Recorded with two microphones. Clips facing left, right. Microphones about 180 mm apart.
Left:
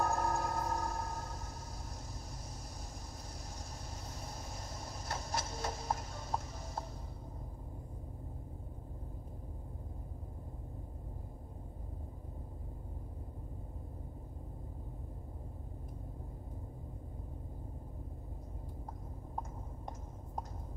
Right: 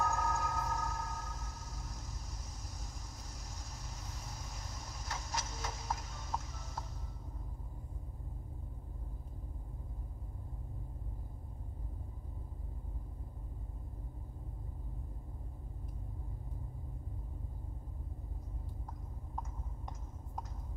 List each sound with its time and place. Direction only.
0.0 s music: 30° left (ahead or behind)
4.1 s vehicle: 30° left (ahead or behind)
5.4 s a sound: 30° left (ahead or behind)